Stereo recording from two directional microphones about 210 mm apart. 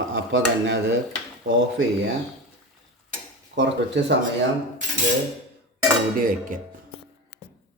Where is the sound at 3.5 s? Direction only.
55° right (ahead or behind).